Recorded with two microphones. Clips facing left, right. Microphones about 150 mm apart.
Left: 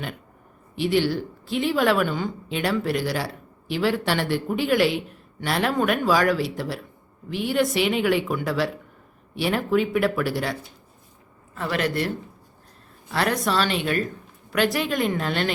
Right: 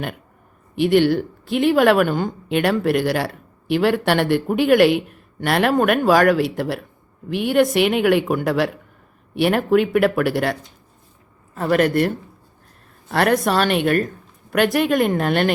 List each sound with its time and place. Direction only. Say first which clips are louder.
0.8 s speech: right 6 dB; 60° right (ahead or behind)
11.5 s a man's voice: right 8 dB; 45° right (ahead or behind)